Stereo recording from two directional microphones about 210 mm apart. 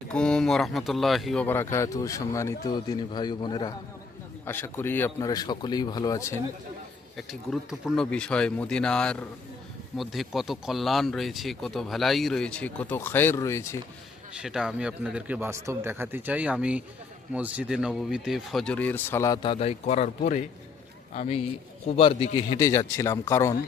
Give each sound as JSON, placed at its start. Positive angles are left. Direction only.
{"t": 0.1, "sound": "speech", "side_deg": 5}
{"t": 7.2, "sound": "speech", "side_deg": 0}
{"t": 14.3, "sound": "speech", "side_deg": -5}